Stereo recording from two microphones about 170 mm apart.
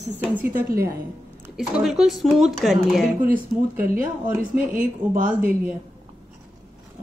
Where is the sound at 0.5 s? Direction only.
60° right (ahead or behind).